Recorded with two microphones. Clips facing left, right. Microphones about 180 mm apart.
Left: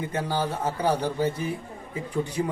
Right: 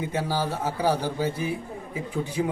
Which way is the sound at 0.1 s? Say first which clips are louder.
Even; 5° right (ahead or behind).